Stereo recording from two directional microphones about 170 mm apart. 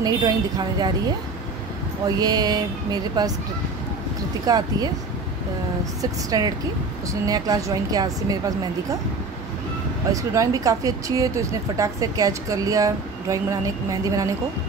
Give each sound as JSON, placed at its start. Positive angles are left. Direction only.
{"t": 0.0, "sound": "a woman's voice", "side_deg": -25}
{"t": 2.0, "sound": "a woman's voice", "side_deg": -20}
{"t": 4.5, "sound": "a woman's voice", "side_deg": -25}
{"t": 6.3, "sound": "a woman's voice", "side_deg": -20}
{"t": 10.1, "sound": "a woman's voice", "side_deg": -20}